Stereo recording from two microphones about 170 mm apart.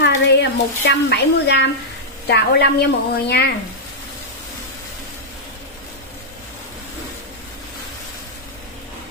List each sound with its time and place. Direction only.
0.0 s a woman's voice: 90° left
2.2 s a woman's voice: 75° left (ahead or behind)